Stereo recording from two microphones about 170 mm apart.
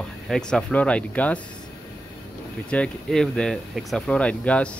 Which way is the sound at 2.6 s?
5° left (ahead or behind).